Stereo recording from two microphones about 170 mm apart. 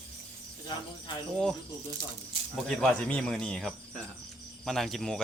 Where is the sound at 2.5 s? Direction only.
Centre (ahead or behind).